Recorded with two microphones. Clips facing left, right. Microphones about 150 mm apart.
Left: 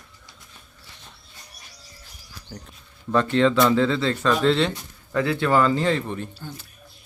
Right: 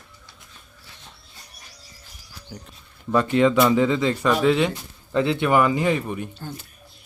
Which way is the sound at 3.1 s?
10° right (ahead or behind).